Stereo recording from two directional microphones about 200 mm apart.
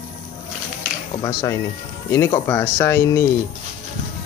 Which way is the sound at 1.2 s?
15° left (ahead or behind).